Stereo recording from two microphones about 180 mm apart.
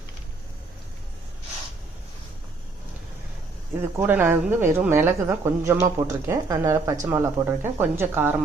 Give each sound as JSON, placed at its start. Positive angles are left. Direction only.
{"t": 3.9, "sound": "speech", "side_deg": -10}